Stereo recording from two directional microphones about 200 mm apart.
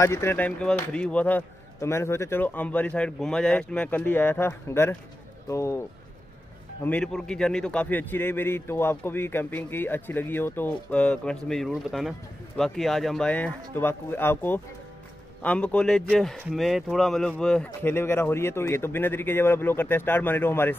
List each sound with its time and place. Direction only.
0.0 s a man's voice: 15° left (ahead or behind)